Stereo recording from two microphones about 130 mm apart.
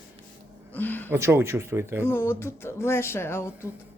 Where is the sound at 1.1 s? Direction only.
20° right (ahead or behind).